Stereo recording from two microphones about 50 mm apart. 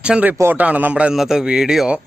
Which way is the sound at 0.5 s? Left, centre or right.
Right.